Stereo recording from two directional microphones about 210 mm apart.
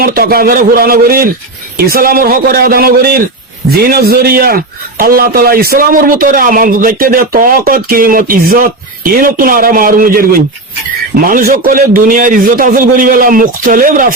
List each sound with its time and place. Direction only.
0.0 s speech: 45° right (ahead or behind)
11.3 s a man's voice: 40° right (ahead or behind)